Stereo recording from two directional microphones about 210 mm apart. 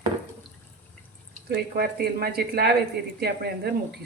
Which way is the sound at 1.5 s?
45° right (ahead or behind).